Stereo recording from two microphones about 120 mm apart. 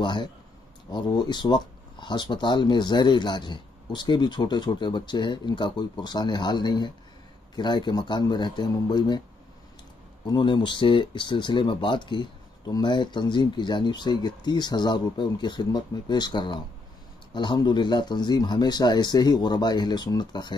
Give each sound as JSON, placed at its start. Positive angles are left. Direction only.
{"t": 0.0, "sound": "speech", "side_deg": 40}
{"t": 10.2, "sound": "speech", "side_deg": 40}